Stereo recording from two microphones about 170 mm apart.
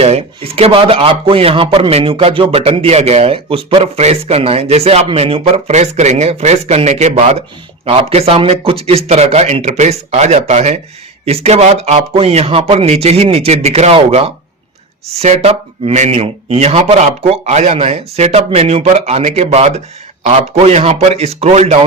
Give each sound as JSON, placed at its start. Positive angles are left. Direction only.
{"t": 0.0, "sound": "speech", "side_deg": -35}